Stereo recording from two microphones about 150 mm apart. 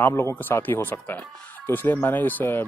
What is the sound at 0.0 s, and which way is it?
Speech, 15° left (ahead or behind).